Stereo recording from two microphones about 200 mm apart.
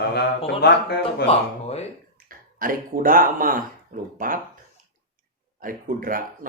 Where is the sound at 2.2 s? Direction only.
45° right (ahead or behind).